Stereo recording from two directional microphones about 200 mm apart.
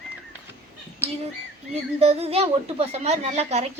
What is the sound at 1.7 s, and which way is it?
Speech, 30° right (ahead or behind).